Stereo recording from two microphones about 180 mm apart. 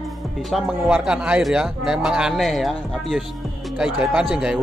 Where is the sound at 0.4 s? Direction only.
Centre (ahead or behind).